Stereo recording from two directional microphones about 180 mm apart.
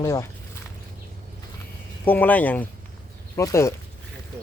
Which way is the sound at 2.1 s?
10° left (ahead or behind).